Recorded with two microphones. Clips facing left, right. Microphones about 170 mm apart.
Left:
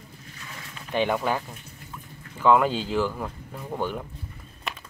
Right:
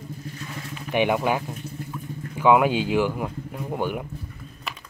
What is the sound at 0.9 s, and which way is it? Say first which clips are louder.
Speech: right 3 dB; 15° right (ahead or behind).